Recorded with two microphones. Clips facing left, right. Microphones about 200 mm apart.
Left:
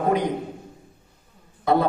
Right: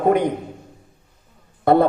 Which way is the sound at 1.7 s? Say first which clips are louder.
Right 5 dB; 55° right (ahead or behind).